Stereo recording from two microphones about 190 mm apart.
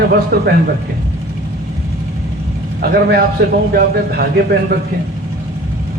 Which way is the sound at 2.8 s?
55° right (ahead or behind).